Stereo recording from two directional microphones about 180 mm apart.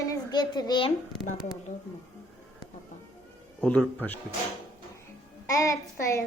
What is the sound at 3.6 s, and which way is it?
Speech, 10° left (ahead or behind).